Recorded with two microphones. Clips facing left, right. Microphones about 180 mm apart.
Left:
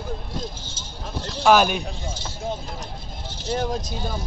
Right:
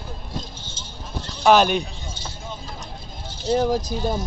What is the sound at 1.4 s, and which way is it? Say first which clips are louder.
Speech: right 1 dB; 5° left (ahead or behind).